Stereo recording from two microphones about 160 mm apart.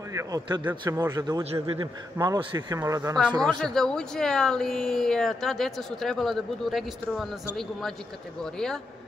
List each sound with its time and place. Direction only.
0.1 s a man's voice: 20° right (ahead or behind)
3.3 s speech: 5° left (ahead or behind)